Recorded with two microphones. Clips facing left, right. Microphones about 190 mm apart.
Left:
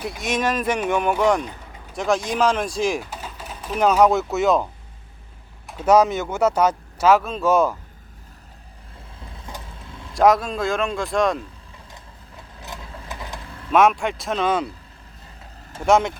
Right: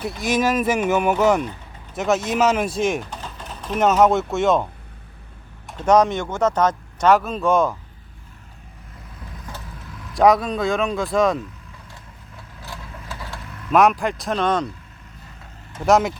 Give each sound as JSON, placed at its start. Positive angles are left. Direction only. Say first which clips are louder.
{"t": 0.0, "sound": "speech", "louder": "right 3 dB", "side_deg": 0}
{"t": 9.8, "sound": "a sound", "louder": "right 1 dB", "side_deg": 25}
{"t": 10.2, "sound": "speech", "louder": "right 1 dB", "side_deg": 0}
{"t": 12.5, "sound": "vehicle", "louder": "even", "side_deg": 20}
{"t": 13.7, "sound": "speech", "louder": "right 1 dB", "side_deg": 0}
{"t": 15.9, "sound": "speech", "louder": "right 1 dB", "side_deg": 0}